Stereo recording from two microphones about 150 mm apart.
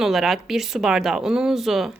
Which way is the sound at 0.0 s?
Centre (ahead or behind).